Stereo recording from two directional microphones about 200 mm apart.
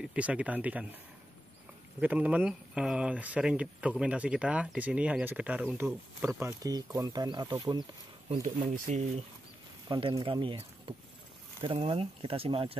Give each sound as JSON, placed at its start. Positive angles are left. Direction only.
{"t": 0.0, "sound": "speech", "side_deg": -5}
{"t": 2.0, "sound": "speech", "side_deg": -5}
{"t": 6.2, "sound": "speech", "side_deg": -15}
{"t": 8.8, "sound": "speech", "side_deg": -35}
{"t": 9.8, "sound": "speech", "side_deg": -25}